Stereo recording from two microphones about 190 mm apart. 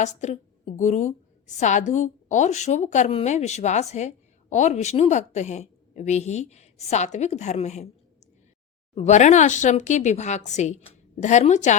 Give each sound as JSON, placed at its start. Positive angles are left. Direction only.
{"t": 0.0, "sound": "a woman's voice", "side_deg": 35}
{"t": 9.0, "sound": "a woman's voice", "side_deg": 40}